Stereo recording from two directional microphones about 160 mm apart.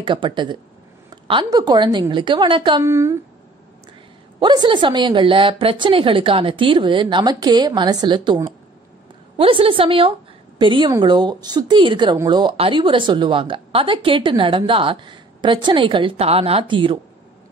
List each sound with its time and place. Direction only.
0.0 s a woman's voice: 30° right (ahead or behind)
2.8 s a woman's voice: 20° right (ahead or behind)
4.4 s speech: 30° right (ahead or behind)
9.4 s a woman's voice: 35° right (ahead or behind)